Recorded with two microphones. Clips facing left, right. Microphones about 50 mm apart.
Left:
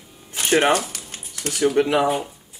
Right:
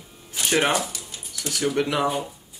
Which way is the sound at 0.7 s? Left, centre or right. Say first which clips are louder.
Left 4 dB; left.